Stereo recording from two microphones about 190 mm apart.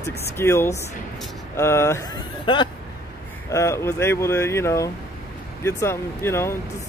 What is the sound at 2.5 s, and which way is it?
Speech, 25° left (ahead or behind).